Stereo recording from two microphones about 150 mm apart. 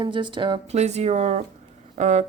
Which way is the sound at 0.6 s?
45° right (ahead or behind).